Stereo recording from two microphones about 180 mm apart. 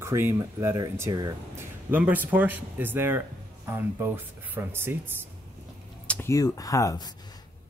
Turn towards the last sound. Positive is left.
turn(degrees=20)  # may be behind; listen again after turning